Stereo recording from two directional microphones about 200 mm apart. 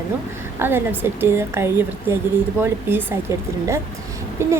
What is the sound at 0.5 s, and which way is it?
Speech, 10° right (ahead or behind).